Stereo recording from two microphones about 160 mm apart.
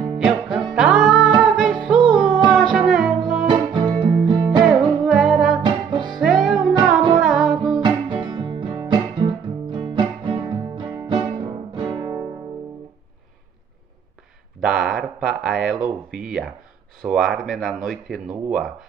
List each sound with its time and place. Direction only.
0.2 s music: 5° right (ahead or behind)
3.4 s music: 30° right (ahead or behind)
5.0 s music: 5° right (ahead or behind)
5.6 s music: 30° right (ahead or behind)
6.1 s music: centre (ahead or behind)
7.8 s music: 30° right (ahead or behind)
14.6 s a sound: 5° right (ahead or behind)
17.0 s speech: 5° right (ahead or behind)